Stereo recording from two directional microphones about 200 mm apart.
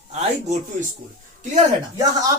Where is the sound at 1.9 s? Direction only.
20° right (ahead or behind).